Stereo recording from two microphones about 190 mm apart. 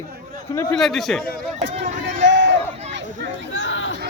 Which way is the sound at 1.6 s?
40° right (ahead or behind).